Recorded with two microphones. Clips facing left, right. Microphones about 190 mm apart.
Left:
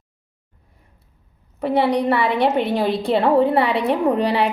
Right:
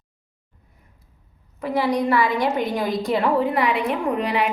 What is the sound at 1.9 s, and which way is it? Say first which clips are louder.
A woman's voice: left 2 dB; 30° left (ahead or behind).